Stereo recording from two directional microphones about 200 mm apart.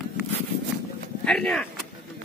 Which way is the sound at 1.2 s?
5° left (ahead or behind).